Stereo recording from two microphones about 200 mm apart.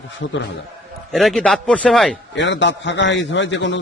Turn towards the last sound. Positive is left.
turn(degrees=65)  # may be behind; listen again after turning